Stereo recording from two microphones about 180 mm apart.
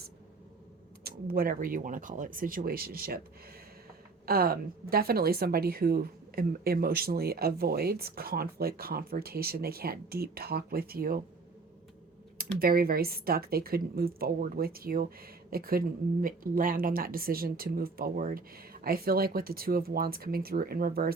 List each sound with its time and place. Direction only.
1.0 s speech: 55° right (ahead or behind)
4.3 s a woman's voice: 55° right (ahead or behind)
12.4 s a woman's voice: 55° right (ahead or behind)